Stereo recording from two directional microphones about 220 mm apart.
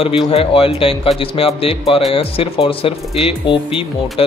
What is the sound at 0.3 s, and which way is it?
Speech, 25° left (ahead or behind).